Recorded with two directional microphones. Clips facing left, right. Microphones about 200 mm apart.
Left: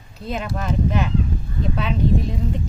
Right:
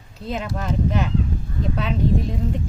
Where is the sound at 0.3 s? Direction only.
25° right (ahead or behind).